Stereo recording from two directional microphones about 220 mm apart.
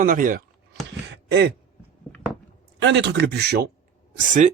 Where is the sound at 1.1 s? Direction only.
50° right (ahead or behind).